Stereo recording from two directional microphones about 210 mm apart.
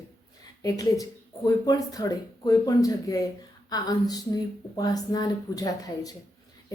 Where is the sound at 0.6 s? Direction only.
15° left (ahead or behind).